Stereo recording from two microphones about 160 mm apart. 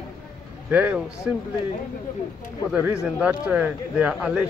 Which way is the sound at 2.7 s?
10° right (ahead or behind).